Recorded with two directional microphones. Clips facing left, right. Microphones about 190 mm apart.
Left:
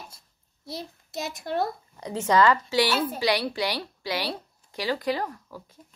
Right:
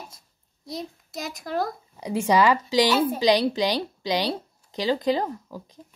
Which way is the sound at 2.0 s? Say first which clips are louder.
Right 1 dB; 10° right (ahead or behind).